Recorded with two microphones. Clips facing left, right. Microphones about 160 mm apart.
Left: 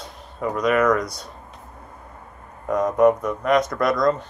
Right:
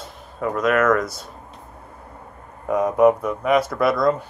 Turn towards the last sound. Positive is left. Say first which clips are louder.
# right 1 dB
turn(degrees=-5)  # may be behind; listen again after turning